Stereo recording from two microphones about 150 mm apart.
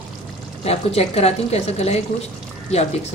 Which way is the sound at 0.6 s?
45° left (ahead or behind).